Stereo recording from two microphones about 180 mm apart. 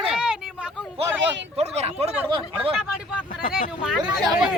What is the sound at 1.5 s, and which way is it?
Speech, 35° right (ahead or behind).